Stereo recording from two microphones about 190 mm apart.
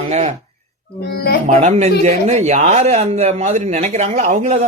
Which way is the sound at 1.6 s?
35° right (ahead or behind).